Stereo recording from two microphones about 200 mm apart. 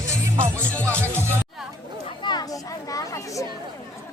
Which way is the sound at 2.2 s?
20° left (ahead or behind).